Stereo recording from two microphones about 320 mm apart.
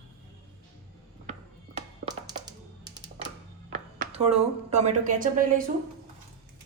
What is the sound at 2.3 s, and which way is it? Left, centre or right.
Music, centre.